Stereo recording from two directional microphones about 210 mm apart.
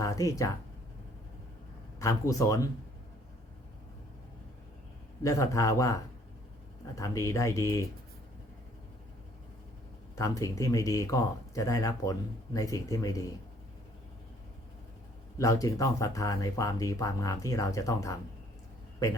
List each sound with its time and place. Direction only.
0.0 s speech: 15° left (ahead or behind)
2.0 s speech: 15° left (ahead or behind)
5.2 s speech: 15° left (ahead or behind)
10.2 s speech: 15° left (ahead or behind)
15.4 s speech: 15° left (ahead or behind)